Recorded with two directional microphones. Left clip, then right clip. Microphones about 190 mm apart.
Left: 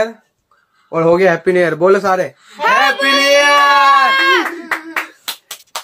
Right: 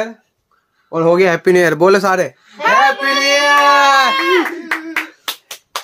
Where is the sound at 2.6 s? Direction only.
15° left (ahead or behind).